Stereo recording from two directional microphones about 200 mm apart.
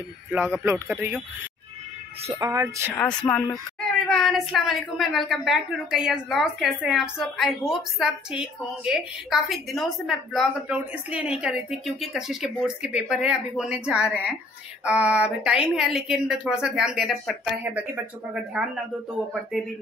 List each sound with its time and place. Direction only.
0.3 s a man's voice: 10° right (ahead or behind)
2.2 s a man's voice: 20° right (ahead or behind)
3.2 s speech: 5° left (ahead or behind)